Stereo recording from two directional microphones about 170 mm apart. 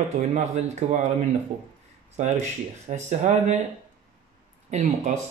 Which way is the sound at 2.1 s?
45° right (ahead or behind).